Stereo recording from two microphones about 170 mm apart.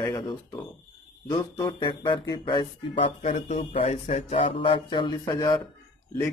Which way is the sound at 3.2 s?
45° left (ahead or behind).